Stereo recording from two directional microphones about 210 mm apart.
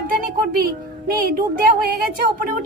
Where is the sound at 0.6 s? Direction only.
45° right (ahead or behind).